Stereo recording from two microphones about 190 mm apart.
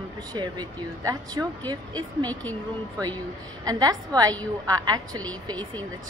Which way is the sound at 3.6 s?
20° right (ahead or behind).